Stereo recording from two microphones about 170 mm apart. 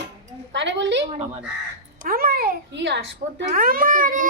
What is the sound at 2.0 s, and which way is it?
Speech, 60° right (ahead or behind).